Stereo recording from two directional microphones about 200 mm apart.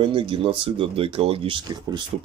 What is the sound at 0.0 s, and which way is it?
Speech, 25° right (ahead or behind).